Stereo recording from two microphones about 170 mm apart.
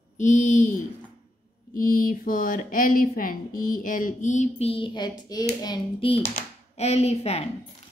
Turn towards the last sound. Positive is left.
turn(degrees=40)  # may be behind; listen again after turning